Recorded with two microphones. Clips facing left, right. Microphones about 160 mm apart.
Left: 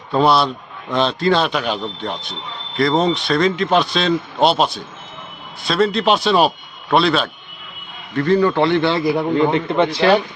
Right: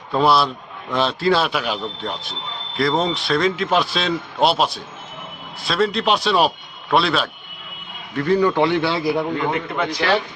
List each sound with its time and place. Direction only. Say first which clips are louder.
0.1 s a man's voice: left 2 dB; centre (ahead or behind)
9.3 s a man's voice: left 6 dB; 30° left (ahead or behind)